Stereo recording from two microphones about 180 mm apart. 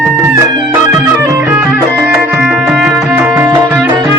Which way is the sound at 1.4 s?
10° right (ahead or behind).